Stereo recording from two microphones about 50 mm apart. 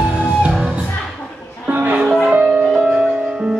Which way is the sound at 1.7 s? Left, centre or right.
Right.